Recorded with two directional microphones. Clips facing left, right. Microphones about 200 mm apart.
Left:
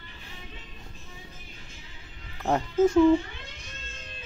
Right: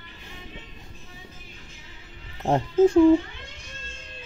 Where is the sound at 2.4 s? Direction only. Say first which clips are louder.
Right 4 dB; 30° right (ahead or behind).